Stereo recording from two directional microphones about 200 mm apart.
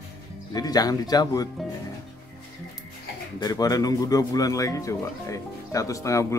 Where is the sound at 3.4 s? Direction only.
20° left (ahead or behind).